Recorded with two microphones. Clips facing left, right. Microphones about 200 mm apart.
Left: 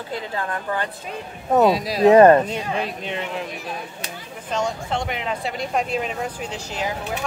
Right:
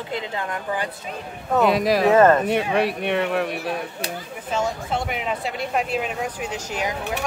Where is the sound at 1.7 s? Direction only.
55° right (ahead or behind).